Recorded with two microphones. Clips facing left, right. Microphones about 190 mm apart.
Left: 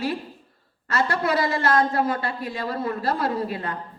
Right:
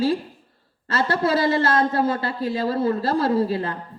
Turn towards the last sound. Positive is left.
turn(degrees=-30)  # may be behind; listen again after turning